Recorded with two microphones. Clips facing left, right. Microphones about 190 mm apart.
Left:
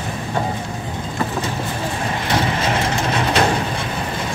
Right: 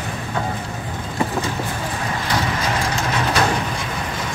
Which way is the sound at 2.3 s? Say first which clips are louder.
Left 3 dB; 25° left (ahead or behind).